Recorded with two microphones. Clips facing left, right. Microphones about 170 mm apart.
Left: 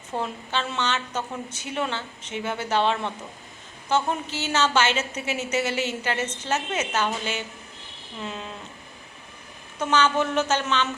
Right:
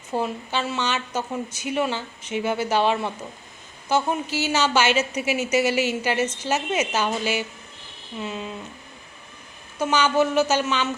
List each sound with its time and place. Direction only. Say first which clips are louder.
0.1 s a woman's voice: right 3 dB; 10° right (ahead or behind)
9.7 s a woman's voice: right 2 dB; 10° right (ahead or behind)